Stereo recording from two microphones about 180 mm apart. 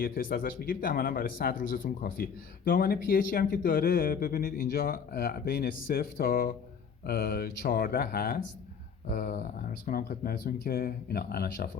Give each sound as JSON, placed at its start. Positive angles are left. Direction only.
{"t": 0.0, "sound": "speech", "side_deg": 55}